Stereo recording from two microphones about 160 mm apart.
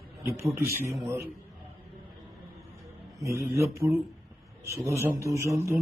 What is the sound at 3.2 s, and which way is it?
Speech, 20° right (ahead or behind).